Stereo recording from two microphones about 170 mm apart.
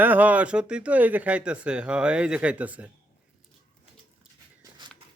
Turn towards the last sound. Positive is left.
turn(degrees=-25)  # may be behind; listen again after turning